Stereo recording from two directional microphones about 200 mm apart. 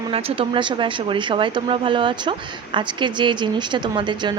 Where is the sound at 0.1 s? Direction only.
30° right (ahead or behind).